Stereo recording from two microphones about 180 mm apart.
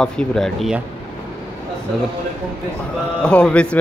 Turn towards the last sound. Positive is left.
turn(degrees=5)  # may be behind; listen again after turning